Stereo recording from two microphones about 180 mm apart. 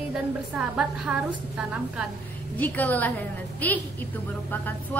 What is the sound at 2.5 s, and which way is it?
Speech, 10° left (ahead or behind).